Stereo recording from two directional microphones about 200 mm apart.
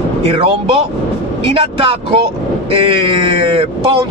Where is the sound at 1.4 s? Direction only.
25° right (ahead or behind).